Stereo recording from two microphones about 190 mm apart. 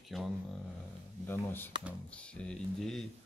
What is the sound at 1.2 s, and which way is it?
Speech, 10° left (ahead or behind).